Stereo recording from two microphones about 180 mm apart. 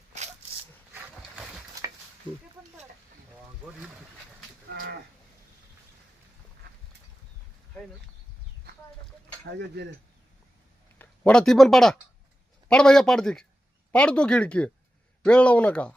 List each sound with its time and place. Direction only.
1.8 s a sound: 20° right (ahead or behind)
4.7 s cattle: 65° right (ahead or behind)
6.6 s duck: 60° right (ahead or behind)
9.5 s speech: 75° right (ahead or behind)
10.9 s speech: 10° left (ahead or behind)